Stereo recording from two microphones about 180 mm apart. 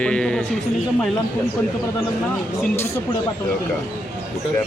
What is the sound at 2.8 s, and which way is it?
Speech, 15° left (ahead or behind).